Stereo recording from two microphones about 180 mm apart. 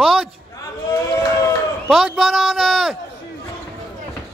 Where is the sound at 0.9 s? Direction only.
20° left (ahead or behind).